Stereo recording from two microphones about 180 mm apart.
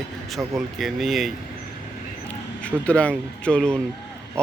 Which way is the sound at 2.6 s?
5° left (ahead or behind).